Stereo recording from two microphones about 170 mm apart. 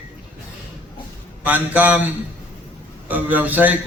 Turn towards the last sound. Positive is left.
turn(degrees=-10)  # may be behind; listen again after turning